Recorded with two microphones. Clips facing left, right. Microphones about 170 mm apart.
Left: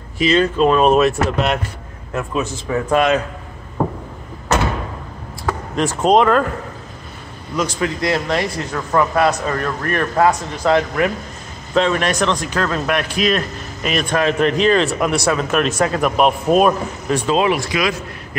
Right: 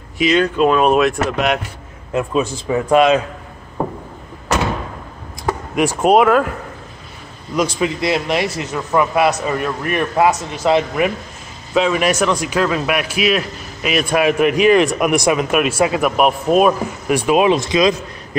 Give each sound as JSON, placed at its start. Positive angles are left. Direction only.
{"t": 0.3, "sound": "speech", "side_deg": -5}
{"t": 2.1, "sound": "speech", "side_deg": -15}
{"t": 5.5, "sound": "speech", "side_deg": -10}
{"t": 7.5, "sound": "speech", "side_deg": -15}
{"t": 11.7, "sound": "speech", "side_deg": -5}